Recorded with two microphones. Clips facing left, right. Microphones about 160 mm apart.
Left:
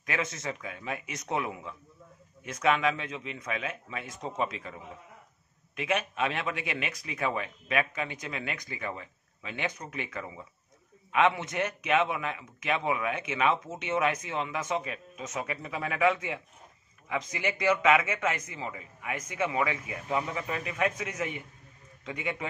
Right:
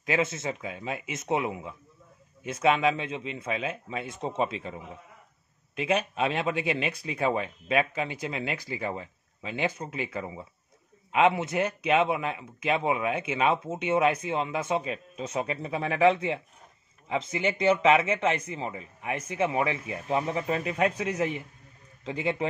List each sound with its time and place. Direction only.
0.0 s speech: 30° right (ahead or behind)
5.8 s speech: 30° right (ahead or behind)